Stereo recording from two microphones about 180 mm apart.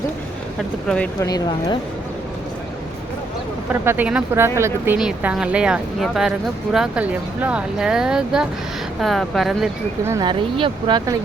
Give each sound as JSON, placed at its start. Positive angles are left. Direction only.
{"t": 0.9, "sound": "speech", "side_deg": 5}
{"t": 1.2, "sound": "speech", "side_deg": 20}
{"t": 3.7, "sound": "speech", "side_deg": -10}
{"t": 10.0, "sound": "speech", "side_deg": -15}
{"t": 10.2, "sound": "speech", "side_deg": -25}